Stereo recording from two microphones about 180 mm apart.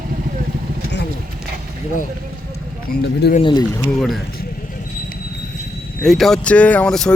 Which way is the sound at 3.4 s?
25° left (ahead or behind).